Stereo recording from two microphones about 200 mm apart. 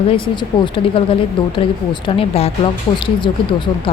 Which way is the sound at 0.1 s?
25° left (ahead or behind).